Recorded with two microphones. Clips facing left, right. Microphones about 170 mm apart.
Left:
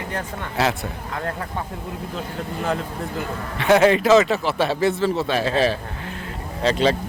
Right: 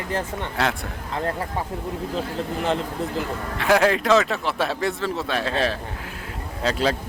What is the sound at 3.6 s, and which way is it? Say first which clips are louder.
Speech: left 4 dB; centre (ahead or behind).